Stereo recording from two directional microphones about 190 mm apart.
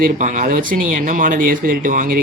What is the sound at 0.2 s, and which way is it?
Speech, 45° right (ahead or behind).